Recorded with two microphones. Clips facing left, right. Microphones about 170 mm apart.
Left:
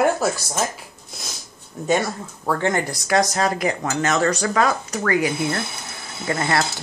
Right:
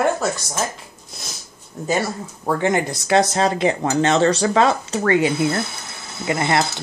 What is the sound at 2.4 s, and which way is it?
Speech, 15° right (ahead or behind).